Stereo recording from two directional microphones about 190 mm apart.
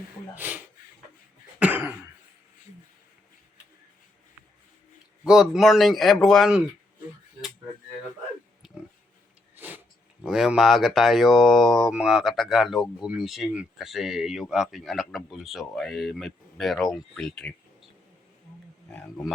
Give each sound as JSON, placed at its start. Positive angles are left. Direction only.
{"t": 0.3, "sound": "speech", "side_deg": -10}
{"t": 1.5, "sound": "cough", "side_deg": -10}
{"t": 5.2, "sound": "speech", "side_deg": -5}
{"t": 8.6, "sound": "pig", "side_deg": 0}
{"t": 9.6, "sound": "a sound", "side_deg": -10}
{"t": 10.2, "sound": "speech", "side_deg": 0}
{"t": 18.9, "sound": "speech", "side_deg": 5}